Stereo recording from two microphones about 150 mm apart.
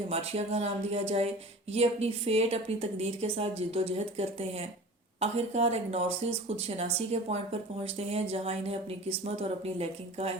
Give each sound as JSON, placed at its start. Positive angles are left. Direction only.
{"t": 0.1, "sound": "a woman's voice", "side_deg": -45}